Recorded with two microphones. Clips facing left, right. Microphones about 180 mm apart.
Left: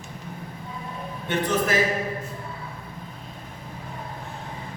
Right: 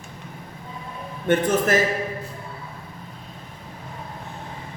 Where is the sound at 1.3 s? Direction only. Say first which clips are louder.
Right 5 dB; 50° right (ahead or behind).